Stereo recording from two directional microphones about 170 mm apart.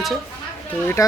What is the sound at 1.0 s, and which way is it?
Speech, 20° left (ahead or behind).